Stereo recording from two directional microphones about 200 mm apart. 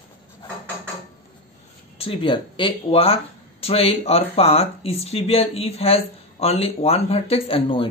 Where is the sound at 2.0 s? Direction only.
25° left (ahead or behind).